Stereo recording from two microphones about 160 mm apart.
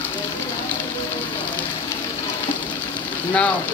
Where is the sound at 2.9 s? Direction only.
10° left (ahead or behind).